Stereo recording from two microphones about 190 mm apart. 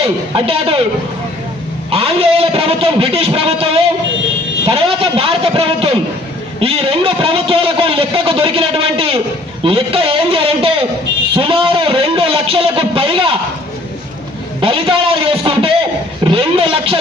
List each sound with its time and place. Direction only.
0.0 s a man's voice: 30° right (ahead or behind)
1.9 s a man's voice: 30° right (ahead or behind)
4.6 s a sound: 30° right (ahead or behind)
6.6 s a man's voice: 30° right (ahead or behind)
14.6 s a man's voice: 30° right (ahead or behind)